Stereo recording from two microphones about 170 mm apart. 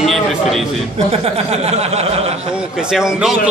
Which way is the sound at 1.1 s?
40° right (ahead or behind).